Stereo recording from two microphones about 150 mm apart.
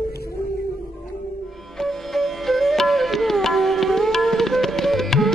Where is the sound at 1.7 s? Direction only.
Centre (ahead or behind).